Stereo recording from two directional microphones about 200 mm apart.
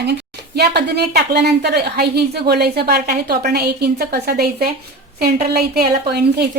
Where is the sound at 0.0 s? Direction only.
55° right (ahead or behind).